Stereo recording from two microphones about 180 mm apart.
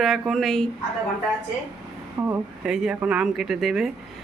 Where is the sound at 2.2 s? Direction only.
15° right (ahead or behind).